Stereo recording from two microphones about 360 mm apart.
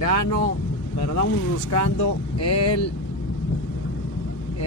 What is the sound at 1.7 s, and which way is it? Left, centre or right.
Speech, left.